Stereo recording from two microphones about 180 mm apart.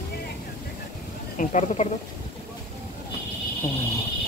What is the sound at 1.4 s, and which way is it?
Speech, 40° left (ahead or behind).